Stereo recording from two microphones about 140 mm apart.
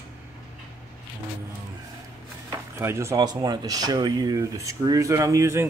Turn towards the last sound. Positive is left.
turn(degrees=-20)  # may be behind; listen again after turning